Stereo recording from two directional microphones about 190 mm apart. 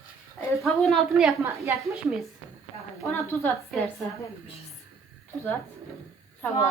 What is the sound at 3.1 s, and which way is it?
Speech, 10° left (ahead or behind).